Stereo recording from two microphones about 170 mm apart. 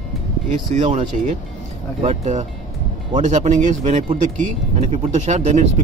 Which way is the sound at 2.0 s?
40° right (ahead or behind).